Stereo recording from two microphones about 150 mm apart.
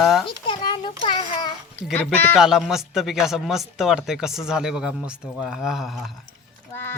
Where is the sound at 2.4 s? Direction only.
5° right (ahead or behind).